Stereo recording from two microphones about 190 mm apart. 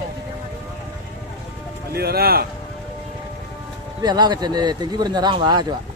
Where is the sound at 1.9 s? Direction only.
55° right (ahead or behind).